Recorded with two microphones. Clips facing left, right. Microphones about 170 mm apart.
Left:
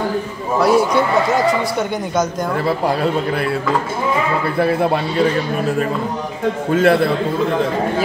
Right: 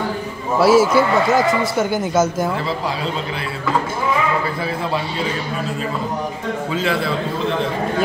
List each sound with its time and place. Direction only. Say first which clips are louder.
0.6 s speech: right 1 dB; 5° right (ahead or behind)
4.6 s speech: left 6 dB; 60° left (ahead or behind)
6.7 s speech: left 9 dB; 55° left (ahead or behind)